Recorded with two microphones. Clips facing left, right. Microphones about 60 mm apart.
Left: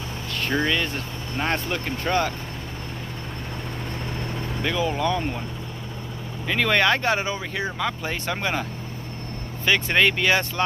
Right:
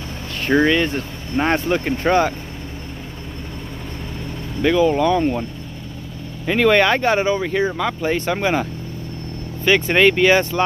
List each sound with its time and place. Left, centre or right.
0.5 s speech: right
4.6 s speech: centre
6.6 s speech: centre
9.7 s speech: centre